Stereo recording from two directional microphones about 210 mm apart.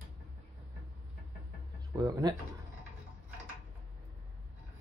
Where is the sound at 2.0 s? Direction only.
20° right (ahead or behind).